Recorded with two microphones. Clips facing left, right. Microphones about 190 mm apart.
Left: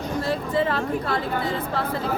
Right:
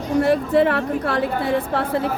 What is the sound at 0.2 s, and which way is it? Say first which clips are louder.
A woman's voice: right 8 dB; 65° right (ahead or behind).